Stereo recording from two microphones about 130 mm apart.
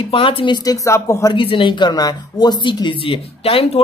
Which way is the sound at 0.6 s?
25° left (ahead or behind).